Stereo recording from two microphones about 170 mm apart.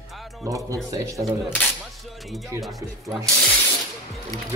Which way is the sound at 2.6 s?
Centre (ahead or behind).